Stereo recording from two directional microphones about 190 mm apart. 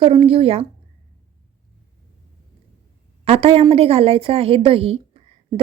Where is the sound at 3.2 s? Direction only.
30° right (ahead or behind).